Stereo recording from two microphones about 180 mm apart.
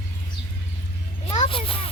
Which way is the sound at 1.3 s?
30° left (ahead or behind).